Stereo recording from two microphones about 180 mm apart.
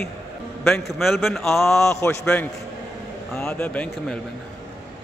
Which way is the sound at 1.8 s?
15° left (ahead or behind).